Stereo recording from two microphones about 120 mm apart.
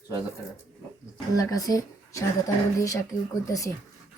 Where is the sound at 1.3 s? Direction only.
30° left (ahead or behind).